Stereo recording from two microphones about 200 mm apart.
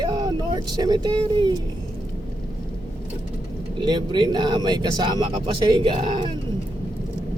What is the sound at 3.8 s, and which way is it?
Speech, 20° right (ahead or behind).